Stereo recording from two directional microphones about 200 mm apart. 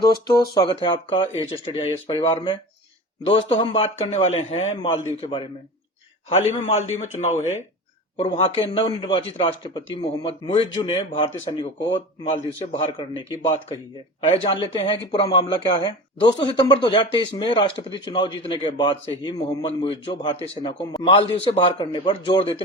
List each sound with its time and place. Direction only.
0.0 s a man's voice: 20° left (ahead or behind)